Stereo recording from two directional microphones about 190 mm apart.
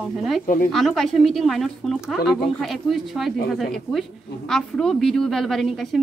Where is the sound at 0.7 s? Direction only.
Centre (ahead or behind).